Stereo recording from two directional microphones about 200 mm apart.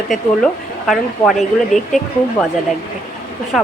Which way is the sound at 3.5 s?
Centre (ahead or behind).